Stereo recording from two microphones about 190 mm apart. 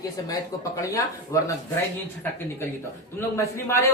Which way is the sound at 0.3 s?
15° left (ahead or behind).